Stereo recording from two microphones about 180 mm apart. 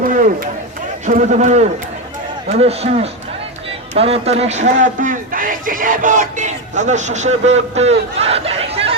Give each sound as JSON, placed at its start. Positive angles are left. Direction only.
{"t": 0.0, "sound": "run", "side_deg": -50}
{"t": 1.0, "sound": "speech", "side_deg": -40}